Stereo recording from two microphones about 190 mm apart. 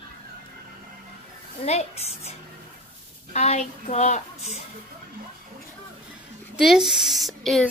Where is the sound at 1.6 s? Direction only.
35° left (ahead or behind).